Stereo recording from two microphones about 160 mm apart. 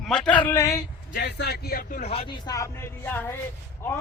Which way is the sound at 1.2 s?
90° left.